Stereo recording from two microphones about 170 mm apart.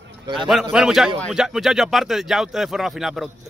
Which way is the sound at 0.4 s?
Centre (ahead or behind).